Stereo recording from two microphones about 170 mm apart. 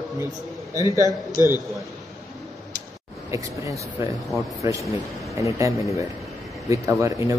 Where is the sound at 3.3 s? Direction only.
15° right (ahead or behind).